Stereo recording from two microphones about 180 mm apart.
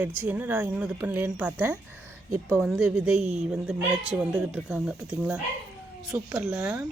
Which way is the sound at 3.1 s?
35° right (ahead or behind).